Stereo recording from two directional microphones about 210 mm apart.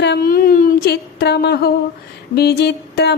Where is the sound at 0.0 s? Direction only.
50° left (ahead or behind).